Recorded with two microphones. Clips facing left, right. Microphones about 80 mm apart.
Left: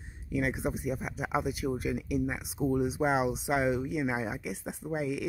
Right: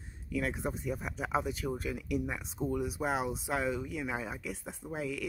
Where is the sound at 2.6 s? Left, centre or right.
Left.